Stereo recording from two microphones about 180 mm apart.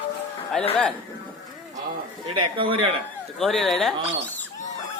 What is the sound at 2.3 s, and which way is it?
Speech, 30° right (ahead or behind).